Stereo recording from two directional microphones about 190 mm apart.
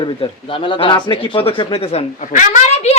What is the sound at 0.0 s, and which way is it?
Speech, 25° left (ahead or behind).